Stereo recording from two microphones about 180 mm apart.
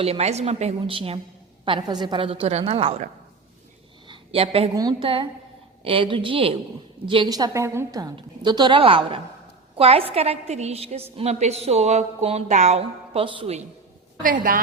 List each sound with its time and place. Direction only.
0.0 s a woman's voice: 35° right (ahead or behind)
4.1 s a woman's voice: 30° right (ahead or behind)
4.7 s a woman's voice: 20° right (ahead or behind)
14.2 s a woman's voice: 50° right (ahead or behind)